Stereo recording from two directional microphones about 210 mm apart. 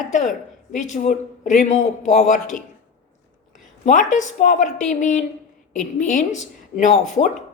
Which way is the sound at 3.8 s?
35° left (ahead or behind).